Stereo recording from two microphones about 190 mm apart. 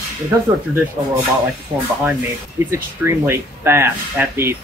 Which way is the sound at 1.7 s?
20° right (ahead or behind).